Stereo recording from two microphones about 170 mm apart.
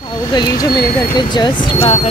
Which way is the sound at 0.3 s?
25° left (ahead or behind).